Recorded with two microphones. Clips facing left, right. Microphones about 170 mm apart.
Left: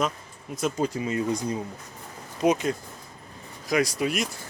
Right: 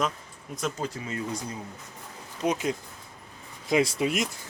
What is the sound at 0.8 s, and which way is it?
Speech, 15° left (ahead or behind).